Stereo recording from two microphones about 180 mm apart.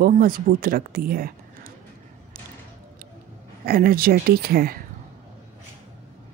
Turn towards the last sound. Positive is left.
turn(degrees=-55)  # may be behind; listen again after turning